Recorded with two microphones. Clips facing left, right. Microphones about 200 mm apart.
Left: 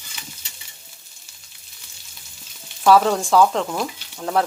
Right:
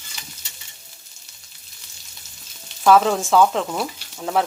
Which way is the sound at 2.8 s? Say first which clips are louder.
Even; centre (ahead or behind).